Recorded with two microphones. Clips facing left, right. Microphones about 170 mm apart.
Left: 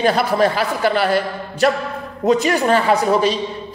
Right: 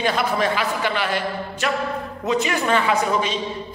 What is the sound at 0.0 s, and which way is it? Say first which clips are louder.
A man's voice: left 5 dB; 35° left (ahead or behind).